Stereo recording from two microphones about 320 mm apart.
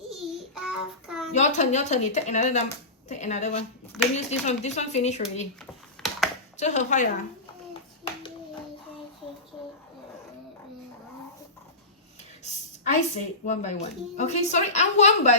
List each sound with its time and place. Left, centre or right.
0.2 s child singing: centre
1.3 s speech: left
6.0 s a sound: centre
6.6 s speech: left
7.7 s clapping: centre
13.4 s speech: left